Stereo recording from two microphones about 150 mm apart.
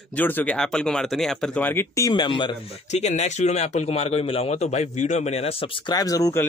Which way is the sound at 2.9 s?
50° left (ahead or behind).